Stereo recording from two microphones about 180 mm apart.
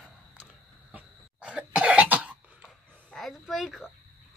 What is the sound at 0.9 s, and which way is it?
Cough, 5° right (ahead or behind).